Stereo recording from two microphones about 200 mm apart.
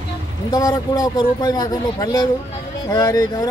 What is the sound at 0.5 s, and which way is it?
Speech, 20° left (ahead or behind).